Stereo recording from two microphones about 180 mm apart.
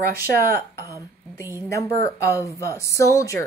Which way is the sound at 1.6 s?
15° left (ahead or behind).